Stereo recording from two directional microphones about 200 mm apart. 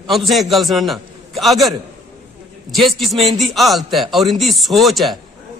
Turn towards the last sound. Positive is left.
turn(degrees=0)  # may be behind; listen again after turning